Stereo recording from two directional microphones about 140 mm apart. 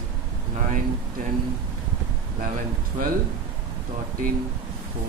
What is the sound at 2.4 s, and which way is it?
Speech, 80° right.